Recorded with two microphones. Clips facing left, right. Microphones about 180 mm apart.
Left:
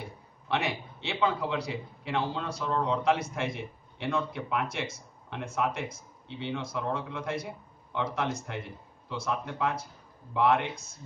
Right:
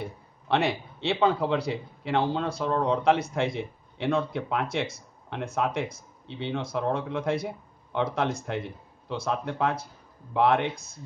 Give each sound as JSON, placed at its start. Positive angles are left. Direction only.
{"t": 0.5, "sound": "a man's voice", "side_deg": -60}